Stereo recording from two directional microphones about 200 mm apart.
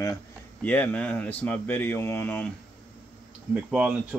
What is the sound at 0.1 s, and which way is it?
Speech, 10° left (ahead or behind).